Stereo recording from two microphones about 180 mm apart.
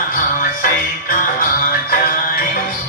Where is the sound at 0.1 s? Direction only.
50° left (ahead or behind).